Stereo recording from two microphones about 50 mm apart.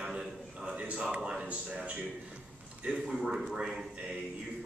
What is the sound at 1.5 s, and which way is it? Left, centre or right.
Speech, right.